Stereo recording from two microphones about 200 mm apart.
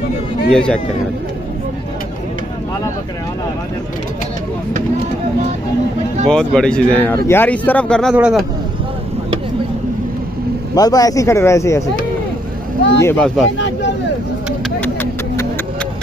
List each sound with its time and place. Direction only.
0.5 s speech: 5° left (ahead or behind)
6.2 s speech: 5° left (ahead or behind)
10.7 s speech: 20° left (ahead or behind)
13.0 s speech: 5° left (ahead or behind)
14.8 s vehicle: 10° left (ahead or behind)